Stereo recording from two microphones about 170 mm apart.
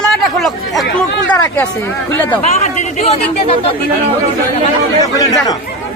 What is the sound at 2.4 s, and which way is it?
Speech, 40° left (ahead or behind).